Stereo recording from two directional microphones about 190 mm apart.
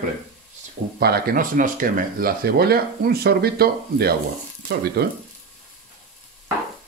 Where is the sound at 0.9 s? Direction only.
55° right (ahead or behind).